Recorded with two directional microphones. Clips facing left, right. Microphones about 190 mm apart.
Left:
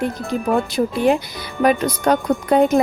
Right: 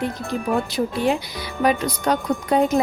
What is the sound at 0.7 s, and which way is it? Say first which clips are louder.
Speech: left 4 dB; 55° left (ahead or behind).